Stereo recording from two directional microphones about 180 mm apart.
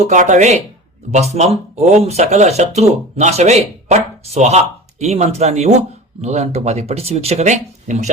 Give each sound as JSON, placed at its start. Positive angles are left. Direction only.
{"t": 0.0, "sound": "speech", "side_deg": -40}